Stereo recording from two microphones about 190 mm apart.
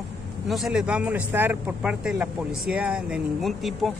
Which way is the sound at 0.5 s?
Centre (ahead or behind).